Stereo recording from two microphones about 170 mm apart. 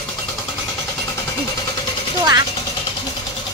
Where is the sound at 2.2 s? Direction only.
20° right (ahead or behind).